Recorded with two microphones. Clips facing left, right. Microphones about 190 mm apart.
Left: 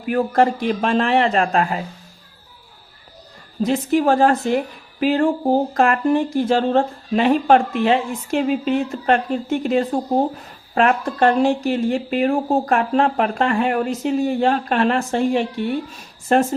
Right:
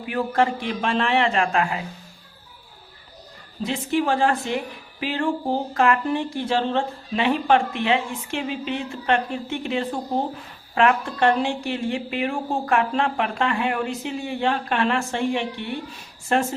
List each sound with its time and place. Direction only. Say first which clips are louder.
0.0 s a woman's voice: left 5 dB; 45° left (ahead or behind)
3.6 s a woman's voice: left 6 dB; 45° left (ahead or behind)